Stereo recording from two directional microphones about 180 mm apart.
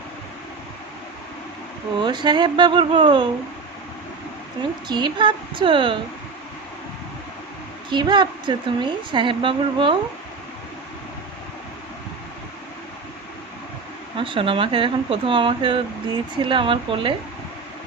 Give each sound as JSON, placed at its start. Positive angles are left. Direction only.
{"t": 2.0, "sound": "a woman's voice", "side_deg": -25}
{"t": 4.9, "sound": "a woman's voice", "side_deg": -25}
{"t": 7.9, "sound": "a woman's voice", "side_deg": -25}
{"t": 14.2, "sound": "a woman's voice", "side_deg": -30}